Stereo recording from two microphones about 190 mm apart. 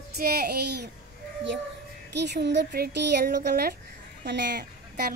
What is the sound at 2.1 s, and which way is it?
Speech, 65° right (ahead or behind).